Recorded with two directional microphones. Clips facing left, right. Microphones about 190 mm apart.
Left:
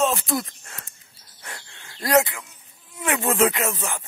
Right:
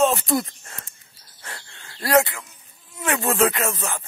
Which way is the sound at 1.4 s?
15° left (ahead or behind).